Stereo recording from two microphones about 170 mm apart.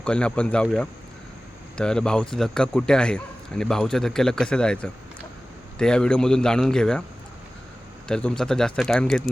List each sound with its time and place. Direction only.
0.0 s speech: 5° left (ahead or behind)
8.0 s speech: 5° left (ahead or behind)